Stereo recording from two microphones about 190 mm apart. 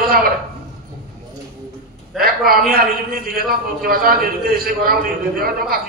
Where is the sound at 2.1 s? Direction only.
50° right (ahead or behind).